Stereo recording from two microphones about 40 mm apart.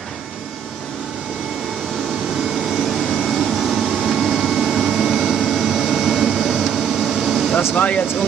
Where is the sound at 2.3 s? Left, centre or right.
Centre.